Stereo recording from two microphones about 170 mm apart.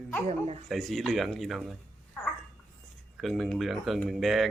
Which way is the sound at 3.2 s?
Centre (ahead or behind).